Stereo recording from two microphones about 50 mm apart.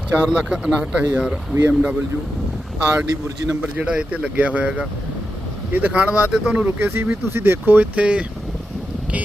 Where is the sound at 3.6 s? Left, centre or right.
Right.